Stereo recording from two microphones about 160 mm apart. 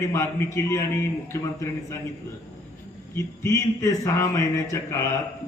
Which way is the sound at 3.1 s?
20° left (ahead or behind).